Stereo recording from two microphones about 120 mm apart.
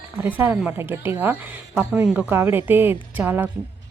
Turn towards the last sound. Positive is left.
turn(degrees=-15)  # may be behind; listen again after turning